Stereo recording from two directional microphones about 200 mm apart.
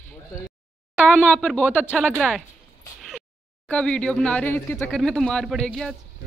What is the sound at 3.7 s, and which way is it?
Speech, 5° left (ahead or behind).